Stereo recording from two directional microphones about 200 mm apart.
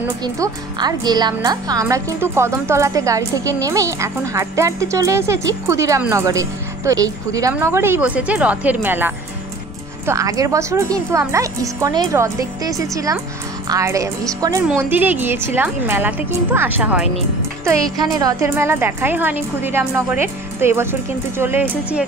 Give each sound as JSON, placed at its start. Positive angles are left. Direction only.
{"t": 0.2, "sound": "speech", "side_deg": -20}